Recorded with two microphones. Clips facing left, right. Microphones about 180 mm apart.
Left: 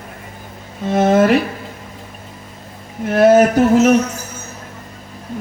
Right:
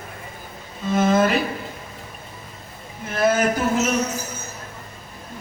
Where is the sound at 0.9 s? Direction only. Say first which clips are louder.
Left 5 dB; 70° left (ahead or behind).